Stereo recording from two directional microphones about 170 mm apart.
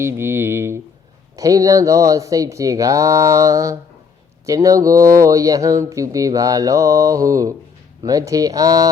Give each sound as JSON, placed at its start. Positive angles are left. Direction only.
{"t": 0.0, "sound": "speech", "side_deg": -15}